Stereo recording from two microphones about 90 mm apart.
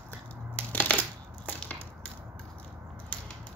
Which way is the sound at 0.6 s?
15° left (ahead or behind).